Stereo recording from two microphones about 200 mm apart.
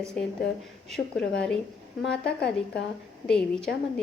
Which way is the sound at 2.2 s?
55° left (ahead or behind).